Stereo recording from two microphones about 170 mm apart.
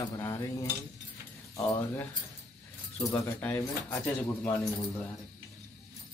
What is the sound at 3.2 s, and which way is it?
Speech, 10° left (ahead or behind).